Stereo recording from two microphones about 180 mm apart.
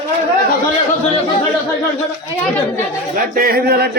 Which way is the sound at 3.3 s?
55° right (ahead or behind).